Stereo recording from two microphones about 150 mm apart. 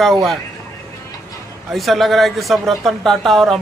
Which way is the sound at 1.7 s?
Centre (ahead or behind).